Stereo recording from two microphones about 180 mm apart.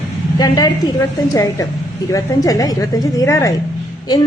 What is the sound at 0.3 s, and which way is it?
A woman's voice, 20° left (ahead or behind).